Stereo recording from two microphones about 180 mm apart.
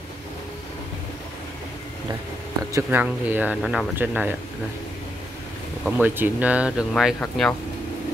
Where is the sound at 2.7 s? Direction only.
10° right (ahead or behind).